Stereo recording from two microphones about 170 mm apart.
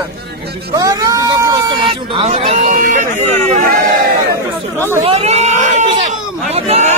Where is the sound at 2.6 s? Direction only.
55° right (ahead or behind).